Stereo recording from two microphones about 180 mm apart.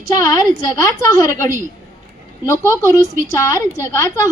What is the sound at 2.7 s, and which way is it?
Speech, 20° left (ahead or behind).